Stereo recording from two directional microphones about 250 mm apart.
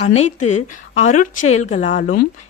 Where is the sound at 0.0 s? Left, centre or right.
Left.